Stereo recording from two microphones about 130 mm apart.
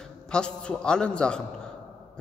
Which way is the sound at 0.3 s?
5° left (ahead or behind).